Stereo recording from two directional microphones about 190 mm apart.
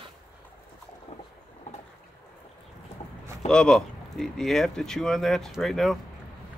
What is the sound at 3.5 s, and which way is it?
Speech, 5° left (ahead or behind).